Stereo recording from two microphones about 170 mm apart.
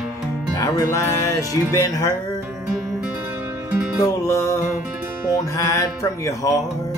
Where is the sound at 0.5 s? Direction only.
20° left (ahead or behind).